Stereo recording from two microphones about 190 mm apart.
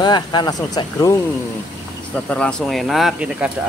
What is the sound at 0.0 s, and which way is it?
Speech, 25° left (ahead or behind).